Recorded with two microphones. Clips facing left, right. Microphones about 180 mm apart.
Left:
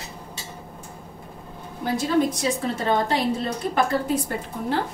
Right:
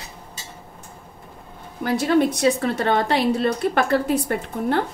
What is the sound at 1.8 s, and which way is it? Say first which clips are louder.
A woman's voice: right 3 dB; 70° right (ahead or behind).